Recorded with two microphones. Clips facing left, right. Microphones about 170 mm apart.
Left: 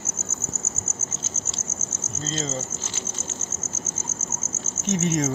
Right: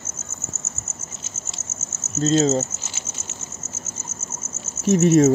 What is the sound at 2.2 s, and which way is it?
Speech, 75° right (ahead or behind).